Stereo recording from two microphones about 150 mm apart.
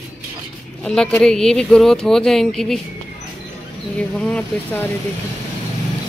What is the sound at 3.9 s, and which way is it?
Speech, 5° left (ahead or behind).